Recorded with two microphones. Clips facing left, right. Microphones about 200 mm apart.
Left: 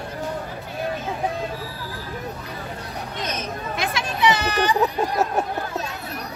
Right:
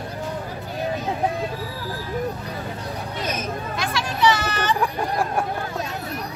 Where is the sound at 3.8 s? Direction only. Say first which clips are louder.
Even; 20° left (ahead or behind).